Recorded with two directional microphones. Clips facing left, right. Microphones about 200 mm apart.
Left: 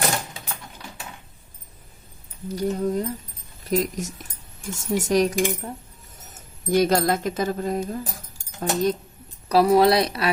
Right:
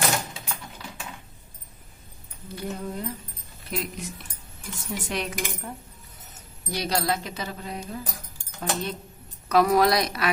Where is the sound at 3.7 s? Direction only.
40° left (ahead or behind).